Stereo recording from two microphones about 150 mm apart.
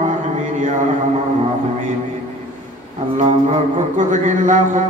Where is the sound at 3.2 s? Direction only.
50° right (ahead or behind).